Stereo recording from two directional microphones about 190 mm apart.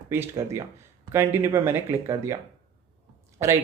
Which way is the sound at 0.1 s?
15° right (ahead or behind).